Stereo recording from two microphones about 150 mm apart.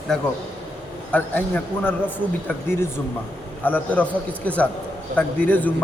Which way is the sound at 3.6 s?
10° left (ahead or behind).